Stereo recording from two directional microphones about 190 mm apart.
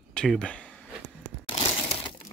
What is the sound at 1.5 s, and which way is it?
Crushing, 25° left (ahead or behind).